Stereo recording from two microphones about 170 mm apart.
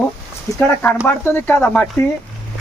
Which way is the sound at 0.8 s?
15° left (ahead or behind).